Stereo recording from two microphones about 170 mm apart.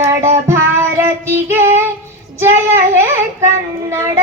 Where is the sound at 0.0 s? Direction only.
15° right (ahead or behind).